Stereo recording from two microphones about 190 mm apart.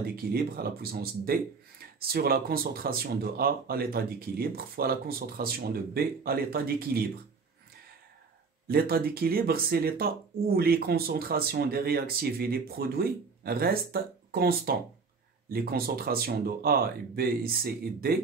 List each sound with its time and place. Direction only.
0.0 s speech: 55° right (ahead or behind)
8.6 s speech: 55° right (ahead or behind)